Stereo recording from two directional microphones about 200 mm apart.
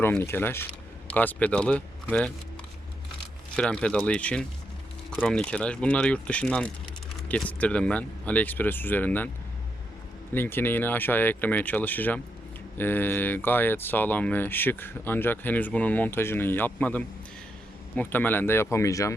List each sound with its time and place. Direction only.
0.0 s speech: 10° left (ahead or behind)
3.5 s speech: 5° left (ahead or behind)
10.3 s speech: 10° left (ahead or behind)